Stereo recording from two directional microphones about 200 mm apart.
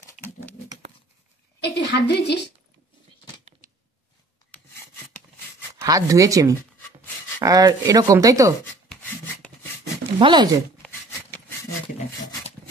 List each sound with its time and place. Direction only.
0.2 s a sound: 40° left (ahead or behind)
1.6 s a woman's voice: 55° left (ahead or behind)
5.9 s speech: 15° right (ahead or behind)
10.1 s speech: 20° right (ahead or behind)